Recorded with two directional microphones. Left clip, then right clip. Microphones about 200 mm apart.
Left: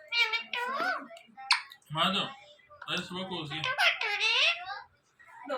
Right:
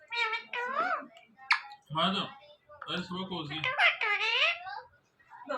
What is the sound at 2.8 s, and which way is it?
Speech, 15° right (ahead or behind).